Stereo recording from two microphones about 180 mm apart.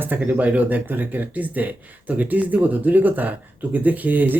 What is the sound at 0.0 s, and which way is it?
Speech, 10° right (ahead or behind).